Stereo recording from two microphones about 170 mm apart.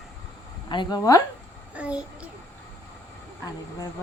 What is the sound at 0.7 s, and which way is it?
Speech, 25° left (ahead or behind).